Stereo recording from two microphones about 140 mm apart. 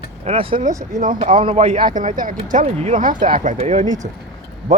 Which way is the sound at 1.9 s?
70° right (ahead or behind).